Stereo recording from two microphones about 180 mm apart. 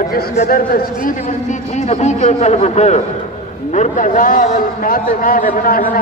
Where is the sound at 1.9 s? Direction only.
40° left (ahead or behind).